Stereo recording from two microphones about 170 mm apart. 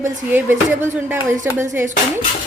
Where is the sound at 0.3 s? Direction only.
10° right (ahead or behind).